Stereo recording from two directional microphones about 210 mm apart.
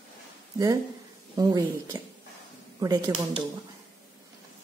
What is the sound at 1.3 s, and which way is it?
A woman's voice, 15° right (ahead or behind).